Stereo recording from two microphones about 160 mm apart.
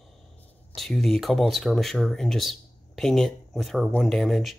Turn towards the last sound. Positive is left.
turn(degrees=0)  # may be behind; listen again after turning